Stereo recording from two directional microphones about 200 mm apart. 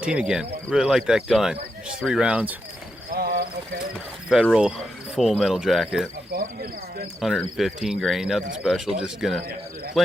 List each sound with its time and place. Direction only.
0.0 s speech: 5° right (ahead or behind)
3.1 s a sound: 50° right (ahead or behind)
3.9 s speech: centre (ahead or behind)
6.3 s speech: 50° right (ahead or behind)
7.2 s speech: centre (ahead or behind)